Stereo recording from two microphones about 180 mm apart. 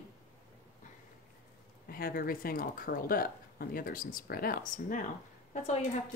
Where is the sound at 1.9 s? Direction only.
55° left (ahead or behind).